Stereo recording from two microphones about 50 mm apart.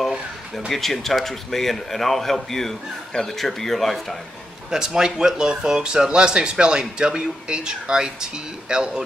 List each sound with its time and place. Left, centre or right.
0.7 s a man's voice: centre
4.6 s speech: centre